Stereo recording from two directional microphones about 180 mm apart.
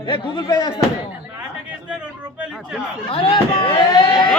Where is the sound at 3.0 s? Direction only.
30° left (ahead or behind).